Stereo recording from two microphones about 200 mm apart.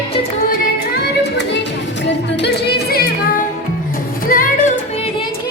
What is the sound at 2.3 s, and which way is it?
Music, 55° left (ahead or behind).